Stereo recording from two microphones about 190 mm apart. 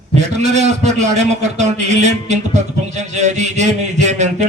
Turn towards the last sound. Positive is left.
turn(degrees=-40)  # may be behind; listen again after turning